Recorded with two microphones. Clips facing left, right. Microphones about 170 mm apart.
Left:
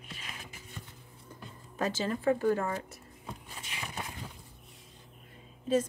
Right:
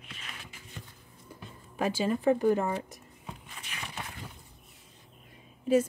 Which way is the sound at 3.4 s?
30° left (ahead or behind).